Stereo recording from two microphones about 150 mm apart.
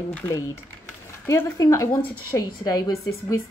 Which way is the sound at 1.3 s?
20° left (ahead or behind).